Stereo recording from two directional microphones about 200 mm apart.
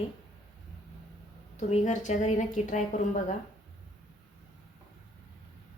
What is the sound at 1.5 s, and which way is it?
A woman's voice, 35° left (ahead or behind).